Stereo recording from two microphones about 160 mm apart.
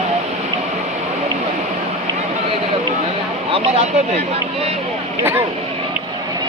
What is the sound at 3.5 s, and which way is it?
Speech, 40° right (ahead or behind).